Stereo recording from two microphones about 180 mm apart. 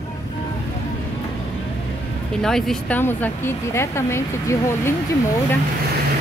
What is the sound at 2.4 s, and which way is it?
Speech, 5° left (ahead or behind).